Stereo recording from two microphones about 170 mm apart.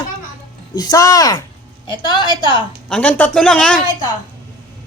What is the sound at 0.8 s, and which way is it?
Speech, 20° left (ahead or behind).